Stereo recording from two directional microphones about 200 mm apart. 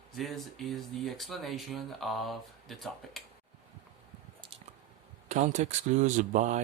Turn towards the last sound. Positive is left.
turn(degrees=-35)  # may be behind; listen again after turning